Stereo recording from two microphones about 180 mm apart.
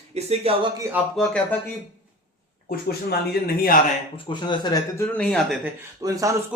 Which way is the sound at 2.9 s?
60° left (ahead or behind).